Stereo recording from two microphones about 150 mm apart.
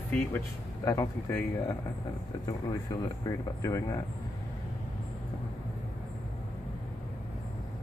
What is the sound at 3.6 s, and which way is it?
Speech, 20° left (ahead or behind).